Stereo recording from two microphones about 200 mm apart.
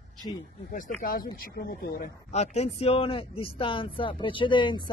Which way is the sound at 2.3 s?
30° left (ahead or behind).